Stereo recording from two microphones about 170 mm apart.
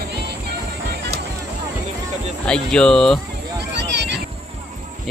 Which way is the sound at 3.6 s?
90° right.